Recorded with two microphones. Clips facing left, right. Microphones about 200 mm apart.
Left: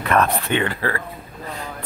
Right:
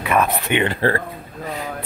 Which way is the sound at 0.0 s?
10° right (ahead or behind).